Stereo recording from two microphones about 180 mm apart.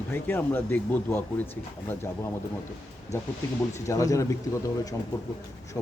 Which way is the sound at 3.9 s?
15° left (ahead or behind).